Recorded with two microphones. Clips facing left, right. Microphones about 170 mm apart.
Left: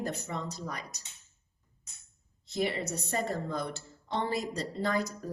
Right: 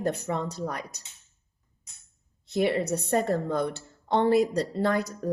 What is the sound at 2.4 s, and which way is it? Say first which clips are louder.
A woman's voice: right 7 dB; 60° right (ahead or behind).